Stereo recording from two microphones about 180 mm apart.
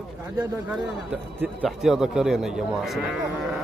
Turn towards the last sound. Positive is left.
turn(degrees=0)  # may be behind; listen again after turning